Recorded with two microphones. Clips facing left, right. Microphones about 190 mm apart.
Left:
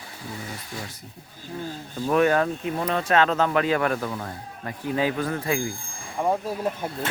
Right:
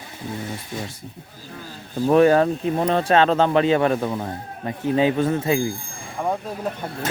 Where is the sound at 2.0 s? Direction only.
30° right (ahead or behind).